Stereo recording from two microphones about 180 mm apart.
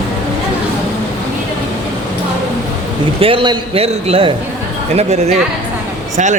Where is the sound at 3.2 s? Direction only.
30° right (ahead or behind).